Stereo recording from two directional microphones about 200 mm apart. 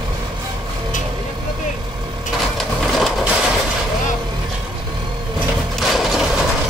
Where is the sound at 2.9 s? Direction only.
Centre (ahead or behind).